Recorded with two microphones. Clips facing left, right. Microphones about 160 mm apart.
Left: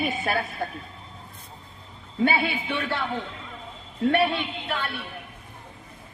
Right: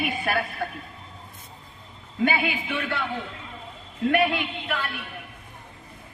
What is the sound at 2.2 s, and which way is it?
Speech, 30° left (ahead or behind).